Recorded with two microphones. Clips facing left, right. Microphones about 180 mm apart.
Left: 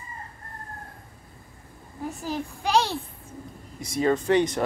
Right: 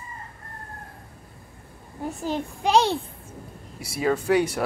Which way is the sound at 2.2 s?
25° right (ahead or behind).